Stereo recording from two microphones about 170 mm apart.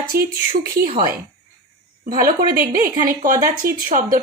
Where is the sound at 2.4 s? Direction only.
10° right (ahead or behind).